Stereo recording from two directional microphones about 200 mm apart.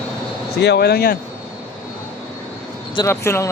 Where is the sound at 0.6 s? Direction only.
55° left (ahead or behind).